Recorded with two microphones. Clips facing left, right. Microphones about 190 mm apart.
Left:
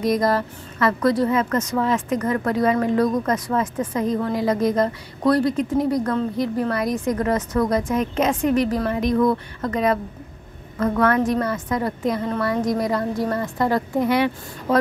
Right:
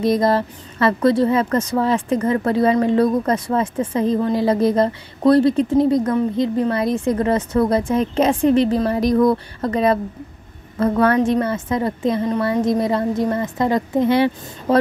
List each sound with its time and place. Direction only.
0.0 s a woman's voice: 25° right (ahead or behind)